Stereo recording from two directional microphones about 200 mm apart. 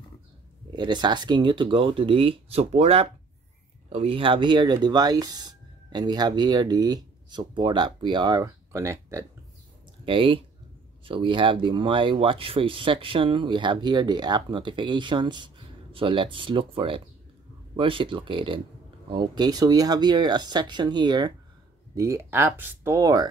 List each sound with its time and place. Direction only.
0.7 s speech: 20° right (ahead or behind)
10.0 s speech: 25° right (ahead or behind)